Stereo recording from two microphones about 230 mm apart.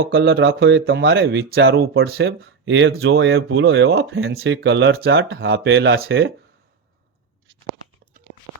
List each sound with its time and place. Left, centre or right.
0.0 s speech: right